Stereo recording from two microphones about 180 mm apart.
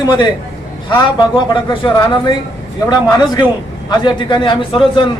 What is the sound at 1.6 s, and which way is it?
Speech, 25° left (ahead or behind).